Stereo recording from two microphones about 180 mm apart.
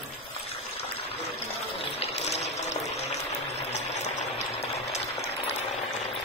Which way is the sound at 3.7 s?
40° left (ahead or behind).